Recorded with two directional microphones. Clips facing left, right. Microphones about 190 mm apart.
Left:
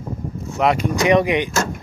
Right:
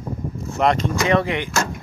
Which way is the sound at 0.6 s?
10° left (ahead or behind).